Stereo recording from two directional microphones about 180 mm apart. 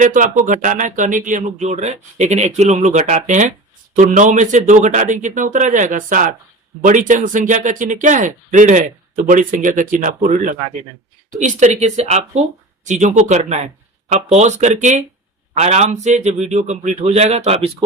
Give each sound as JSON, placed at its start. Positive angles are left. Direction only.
{"t": 0.0, "sound": "a man's voice", "side_deg": -45}